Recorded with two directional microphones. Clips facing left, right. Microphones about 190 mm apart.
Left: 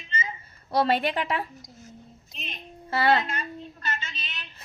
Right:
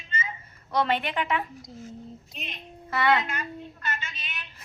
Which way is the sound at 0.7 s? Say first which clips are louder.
Left 2 dB; 35° left (ahead or behind).